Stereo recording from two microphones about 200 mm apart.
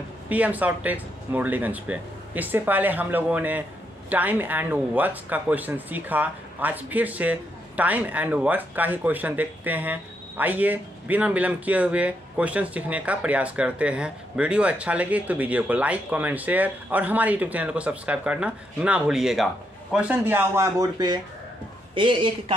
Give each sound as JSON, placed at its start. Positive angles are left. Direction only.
{"t": 0.3, "sound": "speech", "side_deg": -10}